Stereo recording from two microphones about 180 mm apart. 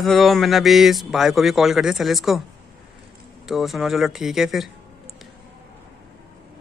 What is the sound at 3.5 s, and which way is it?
A man's voice, centre (ahead or behind).